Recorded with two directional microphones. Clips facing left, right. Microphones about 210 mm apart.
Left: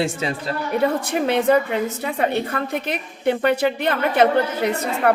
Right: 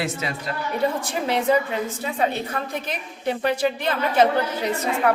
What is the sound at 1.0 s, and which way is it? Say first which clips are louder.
A woman's voice: left 4 dB; 60° left (ahead or behind).